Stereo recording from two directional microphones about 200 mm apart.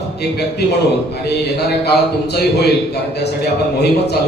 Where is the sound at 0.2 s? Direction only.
55° left (ahead or behind).